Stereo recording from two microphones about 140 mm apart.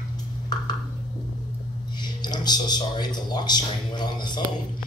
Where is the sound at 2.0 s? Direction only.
30° left (ahead or behind).